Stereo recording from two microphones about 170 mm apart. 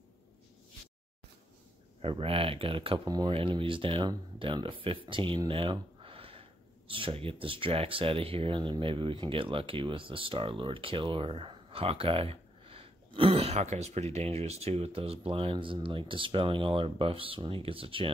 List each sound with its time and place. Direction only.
2.0 s speech: 35° right (ahead or behind)